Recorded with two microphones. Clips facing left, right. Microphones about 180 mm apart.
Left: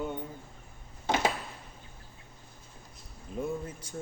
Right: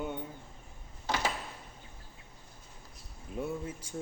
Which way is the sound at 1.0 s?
20° left (ahead or behind).